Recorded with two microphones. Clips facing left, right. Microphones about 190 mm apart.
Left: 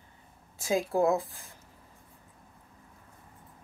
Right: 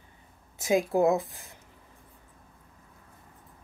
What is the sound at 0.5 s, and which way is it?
Speech, 20° right (ahead or behind).